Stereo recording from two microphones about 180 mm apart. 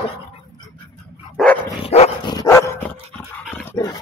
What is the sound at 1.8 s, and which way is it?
Dog, 35° left (ahead or behind).